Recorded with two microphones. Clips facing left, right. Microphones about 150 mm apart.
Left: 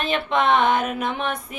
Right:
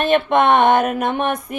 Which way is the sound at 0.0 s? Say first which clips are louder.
Right 7 dB; 55° right (ahead or behind).